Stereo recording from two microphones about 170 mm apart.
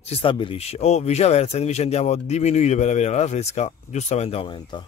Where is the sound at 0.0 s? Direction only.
35° left (ahead or behind).